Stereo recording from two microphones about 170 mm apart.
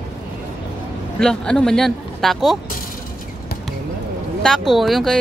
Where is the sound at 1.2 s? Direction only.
5° left (ahead or behind).